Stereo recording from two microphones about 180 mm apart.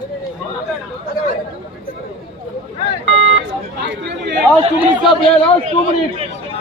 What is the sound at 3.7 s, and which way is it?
Chatter, 75° right (ahead or behind).